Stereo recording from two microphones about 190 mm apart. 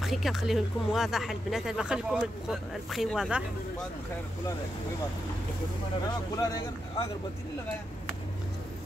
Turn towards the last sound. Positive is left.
turn(degrees=25)  # may be behind; listen again after turning